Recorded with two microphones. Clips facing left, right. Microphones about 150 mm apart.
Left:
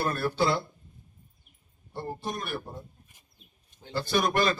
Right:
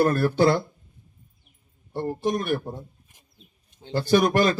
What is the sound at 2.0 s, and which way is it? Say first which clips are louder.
Speech: right 9 dB; 60° right (ahead or behind).